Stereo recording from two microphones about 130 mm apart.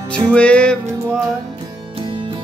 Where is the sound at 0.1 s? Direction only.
10° left (ahead or behind).